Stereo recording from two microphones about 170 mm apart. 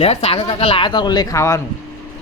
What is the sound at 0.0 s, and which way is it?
Speech, 35° left (ahead or behind).